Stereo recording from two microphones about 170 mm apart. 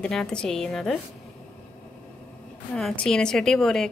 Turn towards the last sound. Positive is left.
turn(degrees=5)  # may be behind; listen again after turning